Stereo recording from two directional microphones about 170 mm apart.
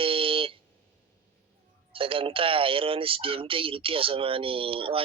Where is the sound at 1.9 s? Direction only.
30° right (ahead or behind).